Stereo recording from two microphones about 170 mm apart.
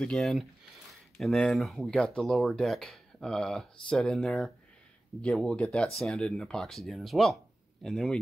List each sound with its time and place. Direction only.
0.0 s speech: centre (ahead or behind)